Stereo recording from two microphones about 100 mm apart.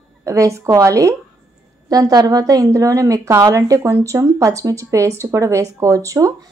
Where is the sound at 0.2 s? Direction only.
30° right (ahead or behind).